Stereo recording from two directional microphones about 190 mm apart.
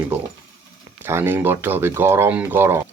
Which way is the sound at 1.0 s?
10° right (ahead or behind).